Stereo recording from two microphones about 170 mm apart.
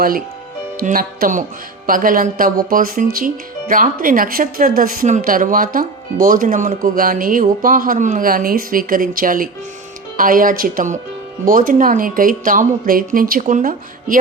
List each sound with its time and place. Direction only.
0.8 s speech: 60° right (ahead or behind)